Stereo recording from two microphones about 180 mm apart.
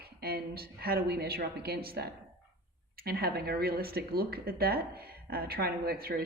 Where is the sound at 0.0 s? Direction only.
60° right (ahead or behind).